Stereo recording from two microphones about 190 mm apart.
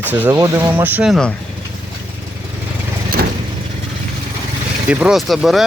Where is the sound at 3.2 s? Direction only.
50° right (ahead or behind).